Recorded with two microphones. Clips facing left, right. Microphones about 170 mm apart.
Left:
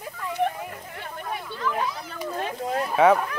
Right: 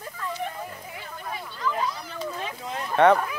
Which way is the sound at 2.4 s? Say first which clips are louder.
Left 6 dB; 50° left (ahead or behind).